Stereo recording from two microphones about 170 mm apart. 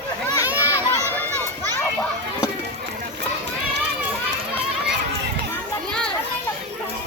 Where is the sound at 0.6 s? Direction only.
15° left (ahead or behind).